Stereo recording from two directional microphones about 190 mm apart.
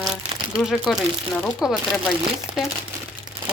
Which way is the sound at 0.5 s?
Centre (ahead or behind).